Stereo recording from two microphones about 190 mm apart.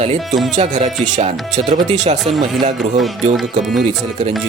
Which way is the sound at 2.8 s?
Centre (ahead or behind).